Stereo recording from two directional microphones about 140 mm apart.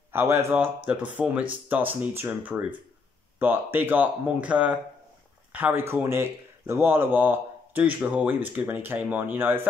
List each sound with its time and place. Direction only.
0.1 s speech: 15° right (ahead or behind)